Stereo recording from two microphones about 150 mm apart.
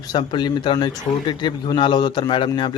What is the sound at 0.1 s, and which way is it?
Speech, 30° left (ahead or behind).